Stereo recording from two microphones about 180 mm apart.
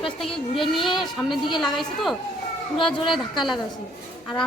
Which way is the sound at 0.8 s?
Centre (ahead or behind).